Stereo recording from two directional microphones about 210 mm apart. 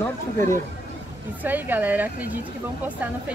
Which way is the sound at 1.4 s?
10° right (ahead or behind).